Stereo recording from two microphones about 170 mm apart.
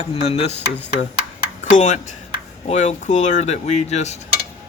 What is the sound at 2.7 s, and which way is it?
Speech, 40° left (ahead or behind).